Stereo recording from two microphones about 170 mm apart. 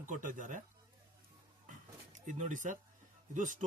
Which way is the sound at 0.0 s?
50° right (ahead or behind).